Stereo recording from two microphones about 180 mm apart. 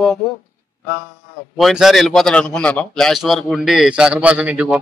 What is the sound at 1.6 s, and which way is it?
A man's voice, centre (ahead or behind).